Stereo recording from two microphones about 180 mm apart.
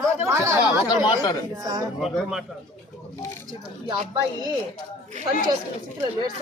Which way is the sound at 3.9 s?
25° right (ahead or behind).